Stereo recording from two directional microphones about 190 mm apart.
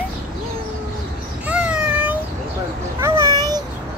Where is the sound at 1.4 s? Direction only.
5° right (ahead or behind).